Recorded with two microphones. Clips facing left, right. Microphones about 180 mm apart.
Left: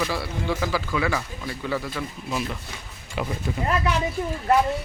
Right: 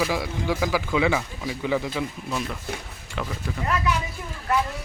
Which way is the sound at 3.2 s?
10° left (ahead or behind).